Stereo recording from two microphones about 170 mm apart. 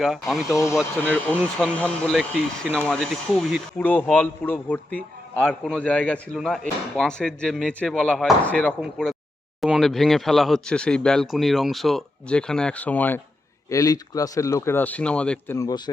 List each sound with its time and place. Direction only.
0.0 s speech: centre (ahead or behind)
0.4 s a man's voice: 20° left (ahead or behind)
15.5 s speech: 20° left (ahead or behind)